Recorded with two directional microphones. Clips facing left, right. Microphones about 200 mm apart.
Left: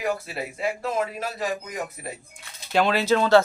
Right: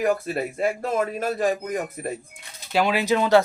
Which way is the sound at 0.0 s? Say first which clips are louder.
Right 5 dB; 50° right (ahead or behind).